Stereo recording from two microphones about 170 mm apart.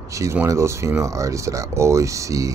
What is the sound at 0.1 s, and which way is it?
Speech, 15° right (ahead or behind).